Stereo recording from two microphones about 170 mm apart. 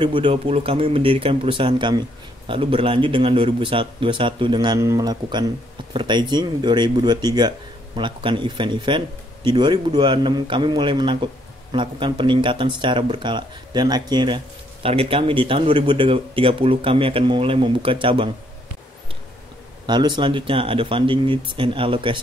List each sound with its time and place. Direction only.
0.0 s speech: 30° right (ahead or behind)
19.9 s speech: 25° right (ahead or behind)